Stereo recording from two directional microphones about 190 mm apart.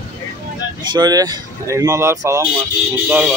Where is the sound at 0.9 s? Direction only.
20° right (ahead or behind).